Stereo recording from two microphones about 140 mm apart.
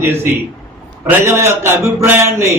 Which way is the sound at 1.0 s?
15° right (ahead or behind).